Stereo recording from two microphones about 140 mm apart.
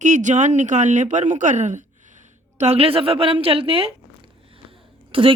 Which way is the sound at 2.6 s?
45° right (ahead or behind).